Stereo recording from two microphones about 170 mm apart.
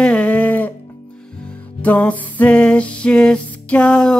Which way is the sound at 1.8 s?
10° left (ahead or behind).